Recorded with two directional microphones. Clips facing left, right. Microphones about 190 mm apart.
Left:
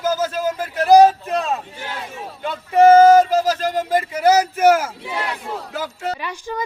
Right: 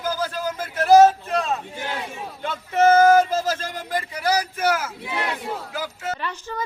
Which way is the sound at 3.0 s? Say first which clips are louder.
Left 4 dB; 20° left (ahead or behind).